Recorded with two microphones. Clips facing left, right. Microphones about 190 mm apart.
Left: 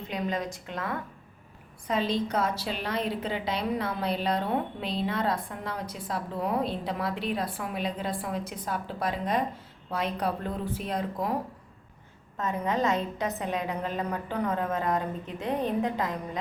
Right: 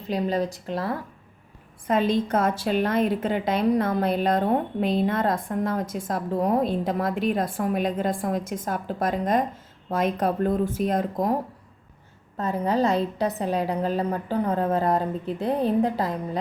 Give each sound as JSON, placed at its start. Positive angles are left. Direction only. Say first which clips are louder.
{"t": 0.1, "sound": "a woman's voice", "louder": "right 7 dB", "side_deg": -35}
{"t": 1.9, "sound": "a woman's voice", "louder": "right 6 dB", "side_deg": -50}
{"t": 12.4, "sound": "a woman's voice", "louder": "right 5 dB", "side_deg": -35}